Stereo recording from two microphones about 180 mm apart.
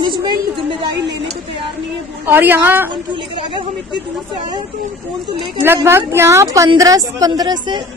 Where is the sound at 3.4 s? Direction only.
25° right (ahead or behind).